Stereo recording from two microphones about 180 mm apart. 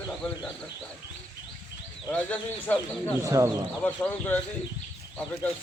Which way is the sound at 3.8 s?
10° left (ahead or behind).